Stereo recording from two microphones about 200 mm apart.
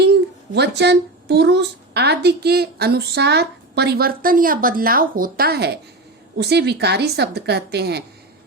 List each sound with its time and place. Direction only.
0.0 s a woman's voice: 55° right (ahead or behind)